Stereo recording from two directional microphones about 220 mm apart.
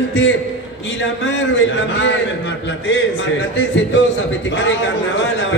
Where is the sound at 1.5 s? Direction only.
55° left (ahead or behind).